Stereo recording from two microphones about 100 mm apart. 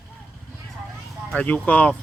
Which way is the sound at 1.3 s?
15° left (ahead or behind).